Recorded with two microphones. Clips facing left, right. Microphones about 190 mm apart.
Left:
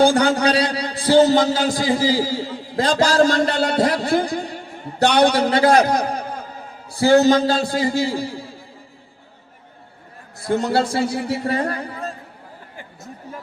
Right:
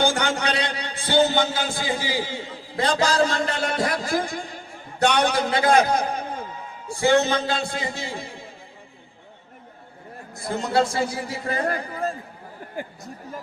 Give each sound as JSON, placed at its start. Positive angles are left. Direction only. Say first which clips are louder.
{"t": 0.0, "sound": "a man's voice", "louder": "left 7 dB", "side_deg": 35}
{"t": 10.7, "sound": "a man's voice", "louder": "left 3 dB", "side_deg": 30}